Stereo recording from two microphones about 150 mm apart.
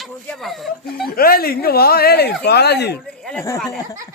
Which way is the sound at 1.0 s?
80° left.